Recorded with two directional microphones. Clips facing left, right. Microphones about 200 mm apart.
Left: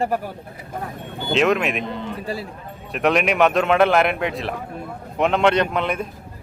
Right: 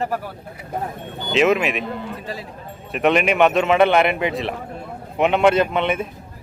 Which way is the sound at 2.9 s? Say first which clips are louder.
Right 1 dB; centre (ahead or behind).